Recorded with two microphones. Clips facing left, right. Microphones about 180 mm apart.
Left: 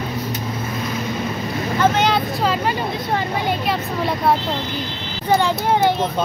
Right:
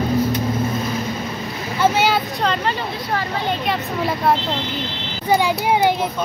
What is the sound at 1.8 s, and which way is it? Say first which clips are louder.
Speech: right 1 dB; 10° right (ahead or behind).